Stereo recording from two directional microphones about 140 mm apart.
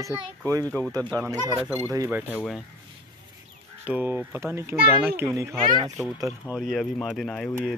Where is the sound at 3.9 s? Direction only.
15° right (ahead or behind).